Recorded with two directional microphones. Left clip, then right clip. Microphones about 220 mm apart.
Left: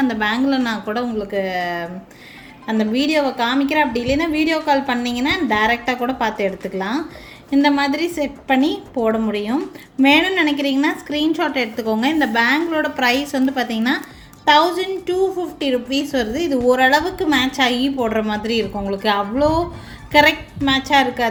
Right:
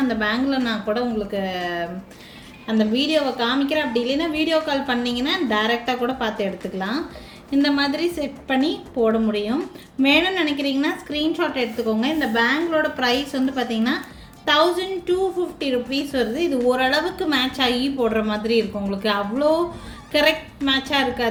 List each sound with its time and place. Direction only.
0.1 s a woman's voice: 35° left (ahead or behind)
20.7 s a woman's voice: 35° left (ahead or behind)